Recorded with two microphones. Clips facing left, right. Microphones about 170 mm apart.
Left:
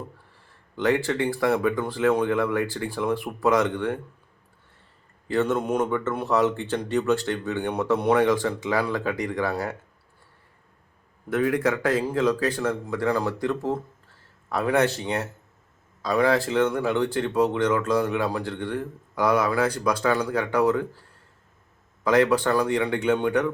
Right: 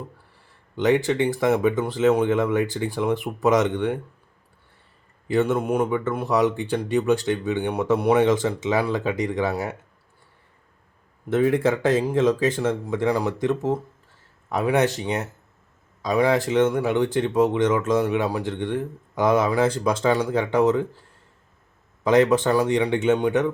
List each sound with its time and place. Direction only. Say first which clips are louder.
0.8 s speech: right 3 dB; 20° right (ahead or behind)
5.3 s speech: right 2 dB; 15° right (ahead or behind)
11.3 s speech: right 3 dB; 25° right (ahead or behind)
22.0 s speech: right 2 dB; 25° right (ahead or behind)